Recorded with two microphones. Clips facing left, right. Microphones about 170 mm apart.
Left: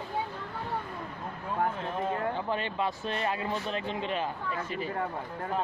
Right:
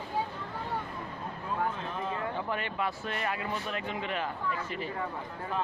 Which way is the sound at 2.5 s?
25° left (ahead or behind).